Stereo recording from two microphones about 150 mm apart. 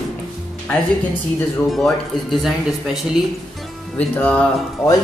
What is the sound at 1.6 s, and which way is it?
Speech, centre (ahead or behind).